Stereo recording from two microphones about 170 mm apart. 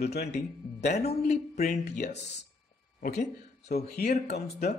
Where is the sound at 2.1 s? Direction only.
90° left.